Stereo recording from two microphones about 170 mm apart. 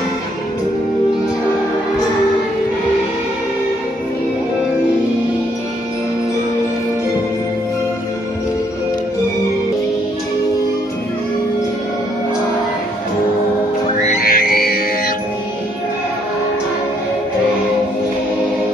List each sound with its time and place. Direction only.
14.2 s music: 60° left (ahead or behind)